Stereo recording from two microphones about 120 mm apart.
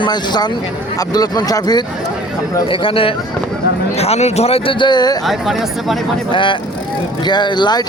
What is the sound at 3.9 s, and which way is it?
Speech, 60° left (ahead or behind).